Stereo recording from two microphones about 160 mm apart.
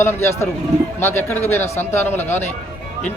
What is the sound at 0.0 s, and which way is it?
Speech, 15° left (ahead or behind).